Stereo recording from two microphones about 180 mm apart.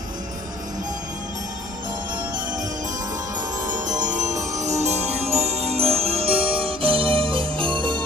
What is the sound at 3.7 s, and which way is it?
Music, 45° right (ahead or behind).